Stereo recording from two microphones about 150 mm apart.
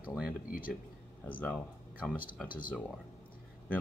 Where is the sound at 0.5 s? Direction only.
70° left (ahead or behind).